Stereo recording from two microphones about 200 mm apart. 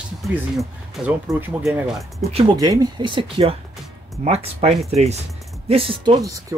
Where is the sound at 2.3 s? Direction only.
30° right (ahead or behind).